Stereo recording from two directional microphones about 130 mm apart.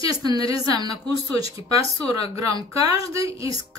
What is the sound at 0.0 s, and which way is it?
A woman's voice, 30° right (ahead or behind).